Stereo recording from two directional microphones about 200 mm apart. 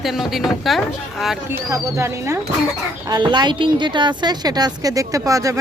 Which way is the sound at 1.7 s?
15° right (ahead or behind).